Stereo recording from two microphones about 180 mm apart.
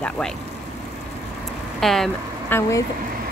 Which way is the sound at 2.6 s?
15° left (ahead or behind).